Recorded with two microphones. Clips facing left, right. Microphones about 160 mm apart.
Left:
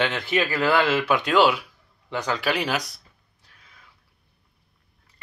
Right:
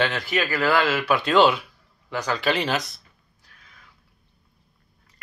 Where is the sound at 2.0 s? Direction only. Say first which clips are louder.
Right 1 dB; 20° left (ahead or behind).